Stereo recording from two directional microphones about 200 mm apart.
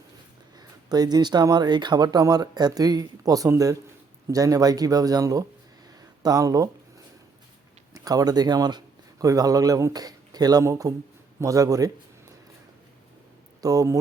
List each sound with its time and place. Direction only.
0.6 s speech: 20° right (ahead or behind)
7.9 s speech: 20° right (ahead or behind)
13.6 s speech: 15° right (ahead or behind)